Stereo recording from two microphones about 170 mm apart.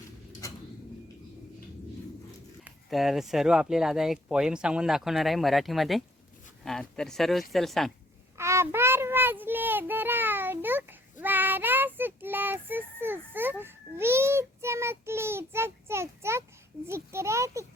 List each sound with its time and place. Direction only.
2.6 s speech: centre (ahead or behind)
8.4 s child singing: 15° right (ahead or behind)
16.8 s a child's voice: 15° right (ahead or behind)